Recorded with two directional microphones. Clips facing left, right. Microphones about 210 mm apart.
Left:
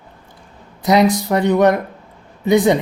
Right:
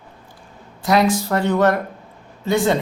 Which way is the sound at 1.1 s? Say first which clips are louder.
Left 3 dB; 20° left (ahead or behind).